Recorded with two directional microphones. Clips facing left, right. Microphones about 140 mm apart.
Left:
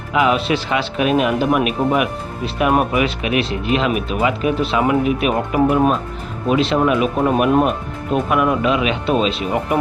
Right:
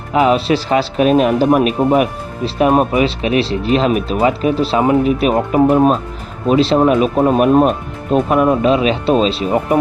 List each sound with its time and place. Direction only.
0.1 s speech: 35° right (ahead or behind)